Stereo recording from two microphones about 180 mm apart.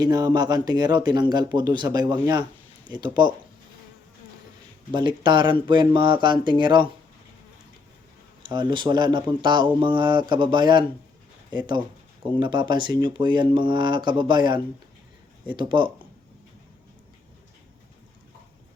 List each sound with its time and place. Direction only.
0.0 s speech: 20° right (ahead or behind)
4.9 s speech: 25° right (ahead or behind)
8.4 s speech: 25° right (ahead or behind)